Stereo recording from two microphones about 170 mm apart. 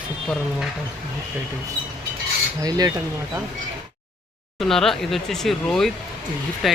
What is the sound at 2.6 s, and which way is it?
Cutlery, 20° right (ahead or behind).